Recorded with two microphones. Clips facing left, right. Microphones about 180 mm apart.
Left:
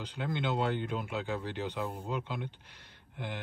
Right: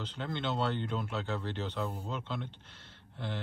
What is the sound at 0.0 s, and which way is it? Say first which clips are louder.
Speech: left 2 dB; 10° left (ahead or behind).